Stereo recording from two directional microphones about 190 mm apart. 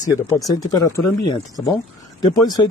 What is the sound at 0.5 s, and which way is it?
Speech, 20° left (ahead or behind).